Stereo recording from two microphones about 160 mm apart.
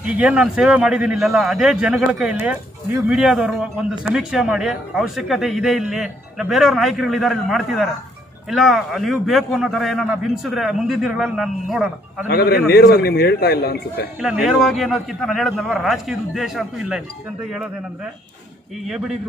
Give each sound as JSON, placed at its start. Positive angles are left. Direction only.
{"t": 0.0, "sound": "speech", "side_deg": -10}
{"t": 12.3, "sound": "a man's voice", "side_deg": 80}
{"t": 14.2, "sound": "speech", "side_deg": -5}
{"t": 18.9, "sound": "speech", "side_deg": 0}